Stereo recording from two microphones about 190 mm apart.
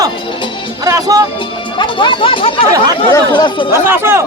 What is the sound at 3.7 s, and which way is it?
Speech, 10° right (ahead or behind).